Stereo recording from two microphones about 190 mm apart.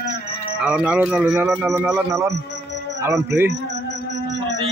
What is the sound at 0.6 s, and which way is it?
A man's voice, 5° right (ahead or behind).